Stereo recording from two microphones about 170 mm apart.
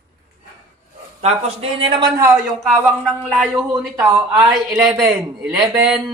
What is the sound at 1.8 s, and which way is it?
Speech, 30° right (ahead or behind).